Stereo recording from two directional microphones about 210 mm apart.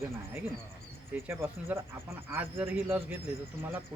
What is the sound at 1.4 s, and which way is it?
Speech, 10° right (ahead or behind).